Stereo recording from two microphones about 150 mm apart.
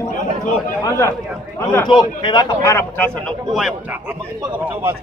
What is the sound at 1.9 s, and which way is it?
Speech, 30° left (ahead or behind).